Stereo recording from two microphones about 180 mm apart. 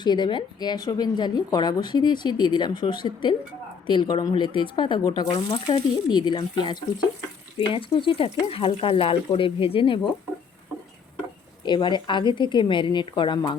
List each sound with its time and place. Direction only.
0.0 s a woman's voice: 25° left (ahead or behind)
11.6 s a woman's voice: 25° left (ahead or behind)